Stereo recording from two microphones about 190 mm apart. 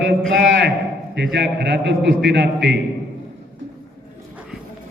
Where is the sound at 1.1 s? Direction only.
65° right (ahead or behind).